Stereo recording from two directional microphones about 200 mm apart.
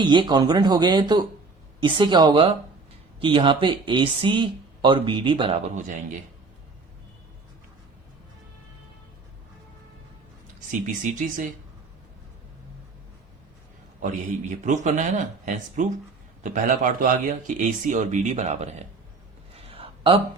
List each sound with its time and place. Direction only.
0.0 s speech: 20° right (ahead or behind); by 6.1 s 40° right (ahead or behind)
10.7 s speech: 40° right (ahead or behind)
14.6 s speech: 35° right (ahead or behind)
19.5 s a sound: 30° right (ahead or behind)